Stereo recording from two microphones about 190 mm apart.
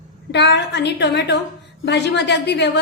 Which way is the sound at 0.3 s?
65° left (ahead or behind).